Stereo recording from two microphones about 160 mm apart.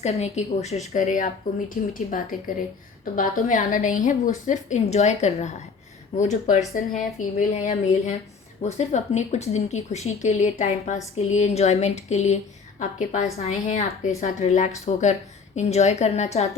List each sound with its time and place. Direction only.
0.0 s a woman's voice: 40° left (ahead or behind)
13.3 s speech: 40° left (ahead or behind)